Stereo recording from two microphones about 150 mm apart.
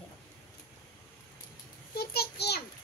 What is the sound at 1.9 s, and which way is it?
Speech, 90° left.